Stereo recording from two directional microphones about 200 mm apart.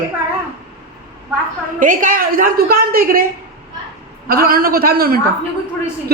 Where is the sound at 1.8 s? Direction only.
40° right (ahead or behind).